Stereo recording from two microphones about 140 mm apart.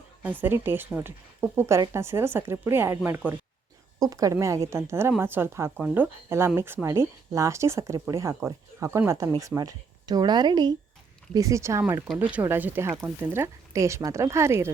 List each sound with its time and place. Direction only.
0.2 s a woman's voice: 15° right (ahead or behind)